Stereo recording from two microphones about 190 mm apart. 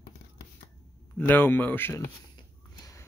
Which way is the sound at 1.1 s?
10° left (ahead or behind).